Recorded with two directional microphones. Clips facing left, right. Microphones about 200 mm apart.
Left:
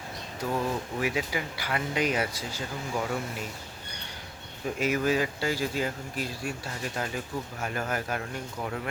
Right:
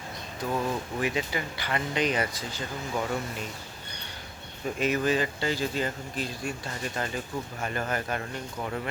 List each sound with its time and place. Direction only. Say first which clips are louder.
0.3 s speech: even; 10° left (ahead or behind)
4.8 s speech: even; 10° left (ahead or behind)